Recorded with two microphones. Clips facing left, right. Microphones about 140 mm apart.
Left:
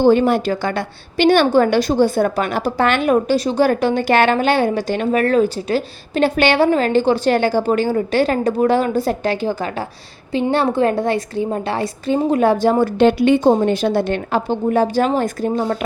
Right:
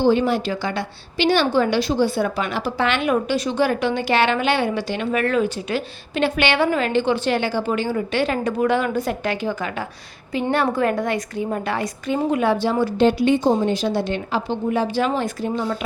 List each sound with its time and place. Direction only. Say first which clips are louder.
0.0 s a woman's voice: left 4 dB; 50° left (ahead or behind)